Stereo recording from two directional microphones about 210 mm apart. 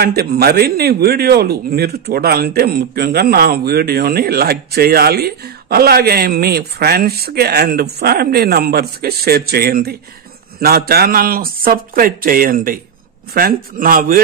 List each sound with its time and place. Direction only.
0.0 s a man's voice: 45° right (ahead or behind)